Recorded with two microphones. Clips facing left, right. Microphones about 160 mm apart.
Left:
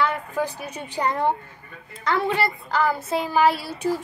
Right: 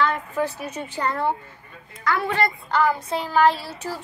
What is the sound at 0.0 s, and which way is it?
Child singing, 10° left (ahead or behind).